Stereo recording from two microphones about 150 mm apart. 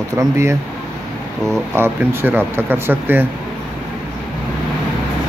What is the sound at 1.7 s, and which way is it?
Speech, 15° right (ahead or behind).